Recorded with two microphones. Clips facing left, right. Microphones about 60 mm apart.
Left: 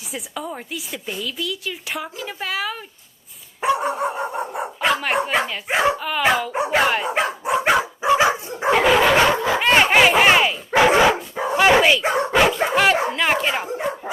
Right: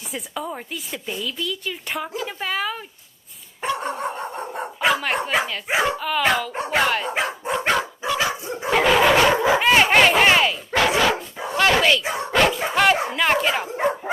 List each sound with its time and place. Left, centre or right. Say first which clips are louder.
0.1 s speech: even; centre
3.6 s dog: left 5 dB; centre
5.9 s speech: left 4 dB; centre
7.2 s dog: left 3 dB; centre
8.0 s dog: left 6 dB; left
8.7 s dog: even; centre
9.3 s dog: right 2 dB; centre
9.6 s dog: left 3 dB; centre
12.3 s speech: even; centre